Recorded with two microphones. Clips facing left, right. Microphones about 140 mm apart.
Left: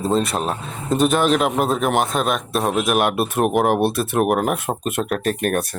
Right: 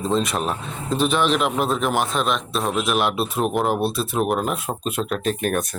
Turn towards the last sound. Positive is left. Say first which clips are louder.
# left 2 dB
turn(degrees=55)  # may be behind; listen again after turning